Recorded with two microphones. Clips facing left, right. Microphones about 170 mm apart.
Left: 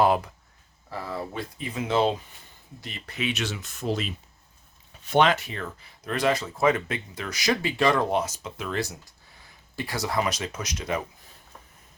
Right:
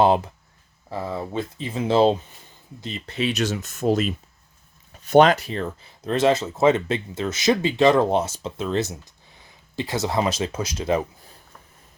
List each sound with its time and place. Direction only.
0.9 s speech: 25° right (ahead or behind); by 4.1 s 45° right (ahead or behind)
5.1 s speech: 40° right (ahead or behind)